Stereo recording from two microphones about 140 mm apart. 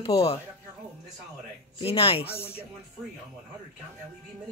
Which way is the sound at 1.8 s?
40° left (ahead or behind).